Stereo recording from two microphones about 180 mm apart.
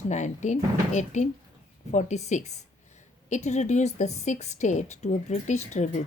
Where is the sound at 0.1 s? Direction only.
40° left (ahead or behind).